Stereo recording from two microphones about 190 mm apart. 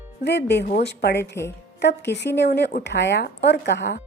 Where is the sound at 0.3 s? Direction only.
60° left (ahead or behind).